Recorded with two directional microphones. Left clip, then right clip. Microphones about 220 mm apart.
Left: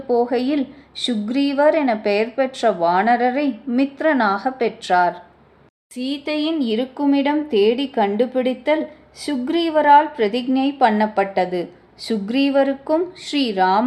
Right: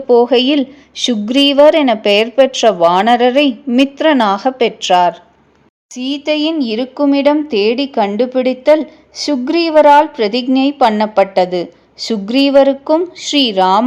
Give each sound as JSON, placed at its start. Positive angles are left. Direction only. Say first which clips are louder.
{"t": 0.1, "sound": "speech", "louder": "right 9 dB", "side_deg": -35}